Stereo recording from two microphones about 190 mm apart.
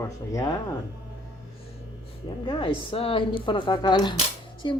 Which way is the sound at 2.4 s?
30° left (ahead or behind).